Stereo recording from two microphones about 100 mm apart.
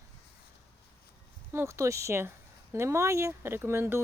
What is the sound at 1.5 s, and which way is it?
Speech, 25° right (ahead or behind).